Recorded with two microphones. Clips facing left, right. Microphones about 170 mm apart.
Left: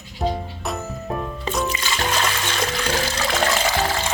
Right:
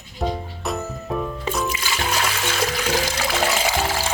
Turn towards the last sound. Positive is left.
turn(degrees=-10)  # may be behind; listen again after turning